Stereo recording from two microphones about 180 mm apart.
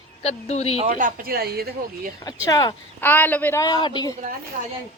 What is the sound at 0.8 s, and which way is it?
Speech, 45° right (ahead or behind).